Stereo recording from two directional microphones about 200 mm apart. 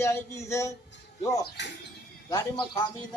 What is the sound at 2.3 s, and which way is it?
Speech, 20° left (ahead or behind).